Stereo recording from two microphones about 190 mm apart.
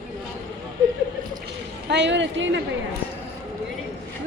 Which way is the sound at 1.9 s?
70° right (ahead or behind).